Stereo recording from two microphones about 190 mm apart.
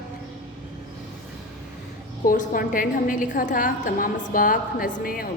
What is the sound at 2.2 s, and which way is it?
A woman's voice, 45° left (ahead or behind).